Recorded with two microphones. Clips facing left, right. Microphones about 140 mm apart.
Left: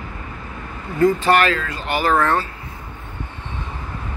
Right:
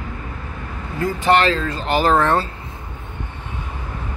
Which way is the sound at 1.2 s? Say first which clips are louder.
Right 1 dB; 25° right (ahead or behind).